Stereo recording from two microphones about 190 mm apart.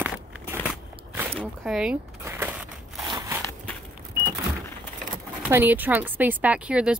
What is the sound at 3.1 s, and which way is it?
Crackle, 15° right (ahead or behind).